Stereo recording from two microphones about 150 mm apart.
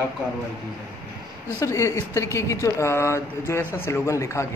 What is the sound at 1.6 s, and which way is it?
Speech, 20° left (ahead or behind).